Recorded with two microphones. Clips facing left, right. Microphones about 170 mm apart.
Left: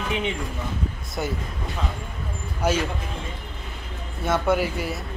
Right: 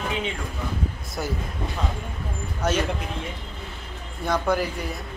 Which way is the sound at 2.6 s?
10° left (ahead or behind).